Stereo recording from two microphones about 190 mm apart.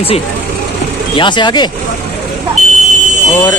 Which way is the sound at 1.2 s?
25° left (ahead or behind).